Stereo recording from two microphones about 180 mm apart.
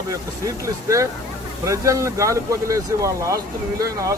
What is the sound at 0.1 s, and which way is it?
Speech, 20° right (ahead or behind).